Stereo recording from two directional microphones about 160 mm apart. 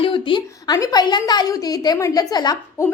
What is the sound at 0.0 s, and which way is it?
A woman's voice, 30° left (ahead or behind).